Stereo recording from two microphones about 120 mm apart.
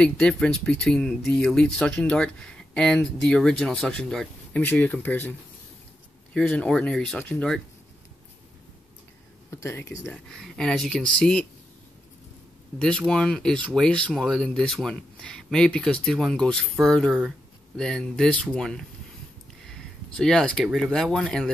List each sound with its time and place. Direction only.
0.0 s speech: 5° left (ahead or behind)
6.3 s speech: 5° left (ahead or behind)
9.5 s speech: 25° left (ahead or behind)
10.1 s speech: centre (ahead or behind)
13.1 s speech: 5° left (ahead or behind)
19.7 s a sound: 5° left (ahead or behind)
20.6 s speech: centre (ahead or behind)